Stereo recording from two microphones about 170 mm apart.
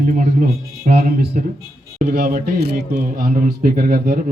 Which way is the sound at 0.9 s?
65° right (ahead or behind).